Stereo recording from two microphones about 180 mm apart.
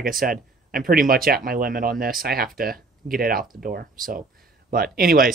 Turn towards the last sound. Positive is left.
turn(degrees=-55)  # may be behind; listen again after turning